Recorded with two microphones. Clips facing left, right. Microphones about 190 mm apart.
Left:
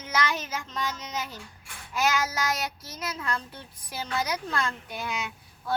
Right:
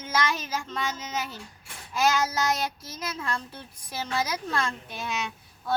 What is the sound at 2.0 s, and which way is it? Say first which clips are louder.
A woman's voice: right 2 dB; 30° right (ahead or behind).